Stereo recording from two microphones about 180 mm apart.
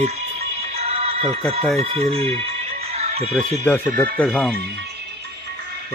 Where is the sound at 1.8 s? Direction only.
35° right (ahead or behind).